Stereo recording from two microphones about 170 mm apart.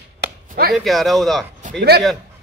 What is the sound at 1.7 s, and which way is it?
Speech, 70° right (ahead or behind).